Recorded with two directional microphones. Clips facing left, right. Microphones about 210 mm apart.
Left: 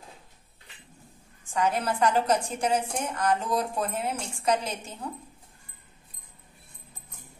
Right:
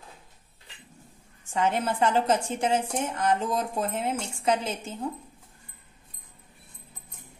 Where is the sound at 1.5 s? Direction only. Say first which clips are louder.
Right 1 dB; 25° right (ahead or behind).